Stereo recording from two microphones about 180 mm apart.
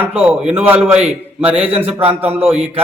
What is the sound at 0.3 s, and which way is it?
Speech, 10° right (ahead or behind).